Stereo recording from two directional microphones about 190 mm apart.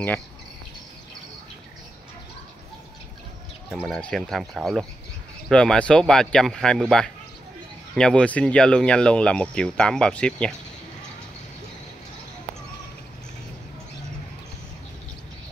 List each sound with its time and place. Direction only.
3.8 s speech: centre (ahead or behind)